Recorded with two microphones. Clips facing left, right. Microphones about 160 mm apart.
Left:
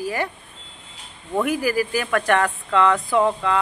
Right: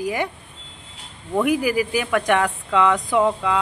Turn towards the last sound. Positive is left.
turn(degrees=-10)  # may be behind; listen again after turning